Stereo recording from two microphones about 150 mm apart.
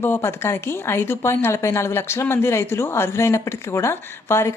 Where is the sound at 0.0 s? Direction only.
15° left (ahead or behind).